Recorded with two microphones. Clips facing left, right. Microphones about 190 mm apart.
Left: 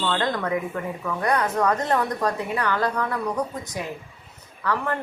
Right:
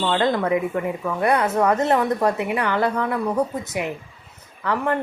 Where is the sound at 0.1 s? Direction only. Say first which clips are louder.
Right 7 dB; 25° right (ahead or behind).